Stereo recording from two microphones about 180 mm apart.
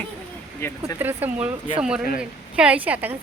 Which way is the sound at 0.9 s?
10° right (ahead or behind).